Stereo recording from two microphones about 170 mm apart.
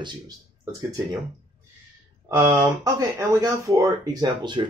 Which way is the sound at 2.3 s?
25° right (ahead or behind).